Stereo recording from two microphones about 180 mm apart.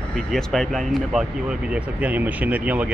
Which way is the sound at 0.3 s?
Centre (ahead or behind).